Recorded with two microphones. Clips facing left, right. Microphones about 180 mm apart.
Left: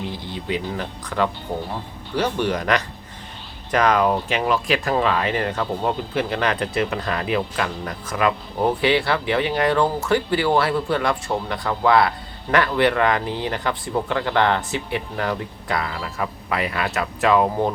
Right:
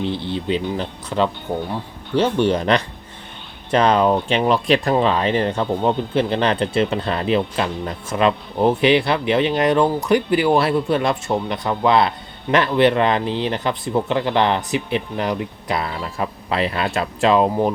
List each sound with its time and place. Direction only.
0.0 s speech: 25° right (ahead or behind)